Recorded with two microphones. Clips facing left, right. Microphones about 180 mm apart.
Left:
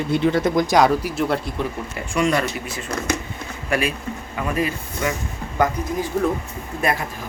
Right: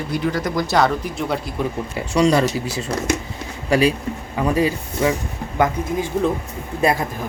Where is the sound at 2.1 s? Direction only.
75° right (ahead or behind).